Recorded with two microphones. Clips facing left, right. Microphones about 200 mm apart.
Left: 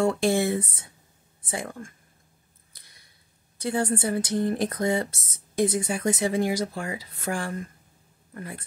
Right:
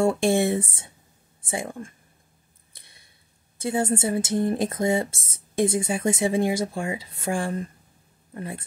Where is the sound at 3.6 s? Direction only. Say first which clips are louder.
Right 2 dB; 25° right (ahead or behind).